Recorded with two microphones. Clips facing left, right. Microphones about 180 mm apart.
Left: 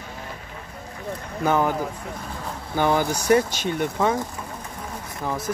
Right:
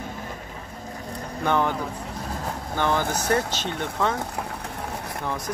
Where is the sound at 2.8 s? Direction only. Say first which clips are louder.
Left 3 dB; 10° left (ahead or behind).